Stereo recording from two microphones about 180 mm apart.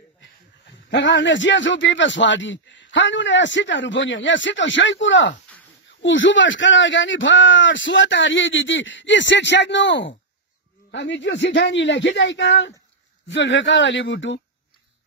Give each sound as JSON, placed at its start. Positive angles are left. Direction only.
{"t": 0.8, "sound": "a man's voice", "side_deg": 75}